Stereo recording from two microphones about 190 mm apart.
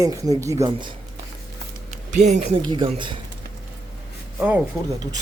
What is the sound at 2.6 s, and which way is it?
Speech, 25° right (ahead or behind).